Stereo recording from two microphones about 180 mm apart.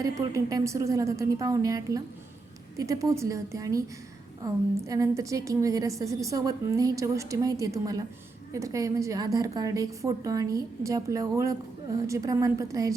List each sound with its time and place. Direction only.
0.0 s a woman's voice: 20° right (ahead or behind)